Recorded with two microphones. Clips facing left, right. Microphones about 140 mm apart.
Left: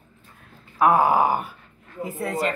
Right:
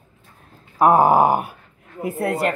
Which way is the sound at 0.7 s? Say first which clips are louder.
Right 4 dB; 40° right (ahead or behind).